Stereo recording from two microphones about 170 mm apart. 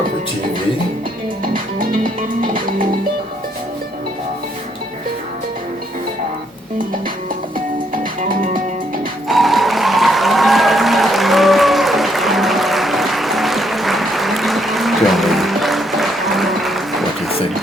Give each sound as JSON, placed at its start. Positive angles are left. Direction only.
{"t": 8.2, "sound": "music", "side_deg": -50}
{"t": 9.3, "sound": "music", "side_deg": 0}